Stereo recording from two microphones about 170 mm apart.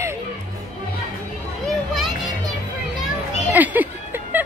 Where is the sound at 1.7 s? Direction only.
Centre (ahead or behind).